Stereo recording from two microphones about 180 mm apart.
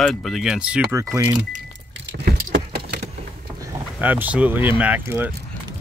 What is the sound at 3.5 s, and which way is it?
Speech, 15° right (ahead or behind).